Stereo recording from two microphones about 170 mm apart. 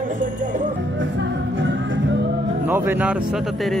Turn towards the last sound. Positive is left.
turn(degrees=0)  # may be behind; listen again after turning